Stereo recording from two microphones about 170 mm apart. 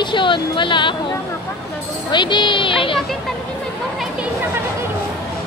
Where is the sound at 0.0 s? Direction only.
30° left (ahead or behind).